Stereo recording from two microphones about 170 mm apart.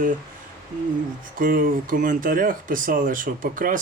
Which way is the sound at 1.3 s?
55° right (ahead or behind).